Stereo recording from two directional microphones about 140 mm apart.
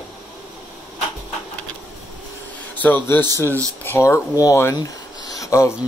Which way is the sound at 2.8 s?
15° left (ahead or behind).